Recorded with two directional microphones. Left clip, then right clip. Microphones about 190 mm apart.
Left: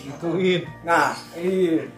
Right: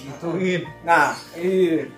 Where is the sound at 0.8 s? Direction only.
15° right (ahead or behind).